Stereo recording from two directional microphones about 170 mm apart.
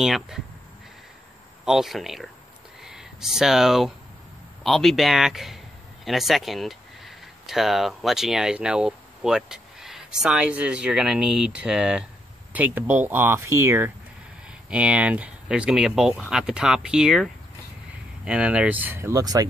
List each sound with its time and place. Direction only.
0.0 s speech: 5° right (ahead or behind)
1.6 s speech: 5° right (ahead or behind); by 19.4 s 20° right (ahead or behind)